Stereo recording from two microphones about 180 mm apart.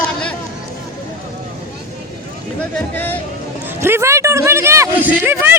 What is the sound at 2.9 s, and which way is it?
Speech, 10° left (ahead or behind).